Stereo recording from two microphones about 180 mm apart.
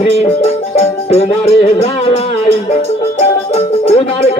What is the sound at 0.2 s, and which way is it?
Music, 35° left (ahead or behind).